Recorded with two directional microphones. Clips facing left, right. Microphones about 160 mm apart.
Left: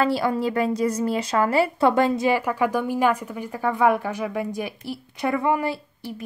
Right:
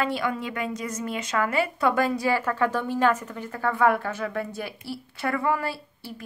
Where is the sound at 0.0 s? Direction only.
35° left (ahead or behind).